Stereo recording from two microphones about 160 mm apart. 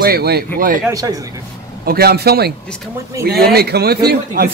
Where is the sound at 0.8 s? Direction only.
20° right (ahead or behind).